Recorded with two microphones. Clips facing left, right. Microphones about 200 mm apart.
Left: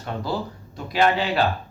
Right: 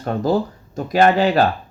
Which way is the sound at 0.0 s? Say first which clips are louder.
Right 9 dB; 45° right (ahead or behind).